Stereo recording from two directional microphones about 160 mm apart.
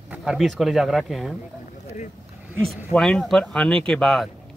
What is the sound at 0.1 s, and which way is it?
Speech, 5° right (ahead or behind).